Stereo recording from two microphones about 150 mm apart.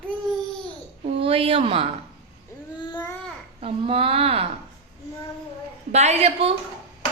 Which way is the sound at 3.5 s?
40° right (ahead or behind).